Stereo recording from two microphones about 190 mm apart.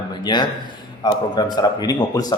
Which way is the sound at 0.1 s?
20° left (ahead or behind).